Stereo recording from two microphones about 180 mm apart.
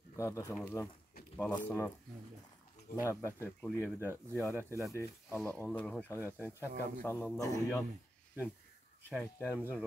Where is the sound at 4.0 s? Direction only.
15° right (ahead or behind).